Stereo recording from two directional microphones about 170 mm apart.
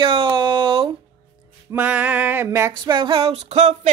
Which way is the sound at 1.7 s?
10° right (ahead or behind).